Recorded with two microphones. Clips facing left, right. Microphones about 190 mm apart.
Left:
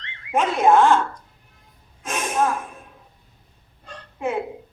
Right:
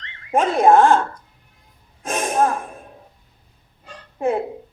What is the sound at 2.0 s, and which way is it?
Gasp, 35° right (ahead or behind).